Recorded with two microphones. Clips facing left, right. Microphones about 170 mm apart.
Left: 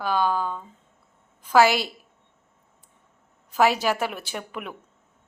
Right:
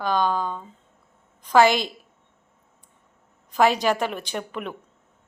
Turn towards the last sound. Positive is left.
turn(degrees=5)  # may be behind; listen again after turning